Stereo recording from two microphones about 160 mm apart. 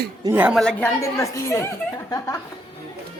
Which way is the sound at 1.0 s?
20° left (ahead or behind).